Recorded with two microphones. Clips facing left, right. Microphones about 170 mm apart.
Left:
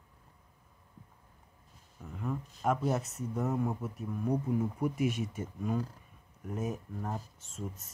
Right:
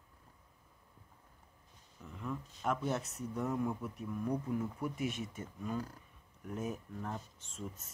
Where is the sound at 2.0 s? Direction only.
45° left (ahead or behind).